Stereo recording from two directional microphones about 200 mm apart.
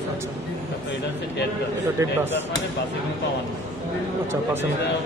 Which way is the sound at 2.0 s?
15° right (ahead or behind).